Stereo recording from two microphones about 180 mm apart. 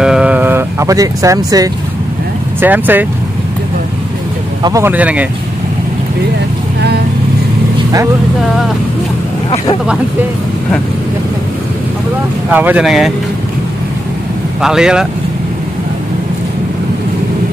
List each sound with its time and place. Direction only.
0.0 s a sound: 5° right (ahead or behind)
2.6 s speech: 10° right (ahead or behind)
4.6 s speech: 15° right (ahead or behind)
12.4 s speech: 10° right (ahead or behind)
14.6 s speech: 5° right (ahead or behind)